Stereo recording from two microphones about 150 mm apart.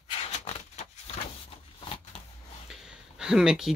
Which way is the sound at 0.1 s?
45° left (ahead or behind).